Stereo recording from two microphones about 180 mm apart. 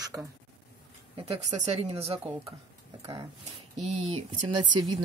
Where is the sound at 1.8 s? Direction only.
35° right (ahead or behind).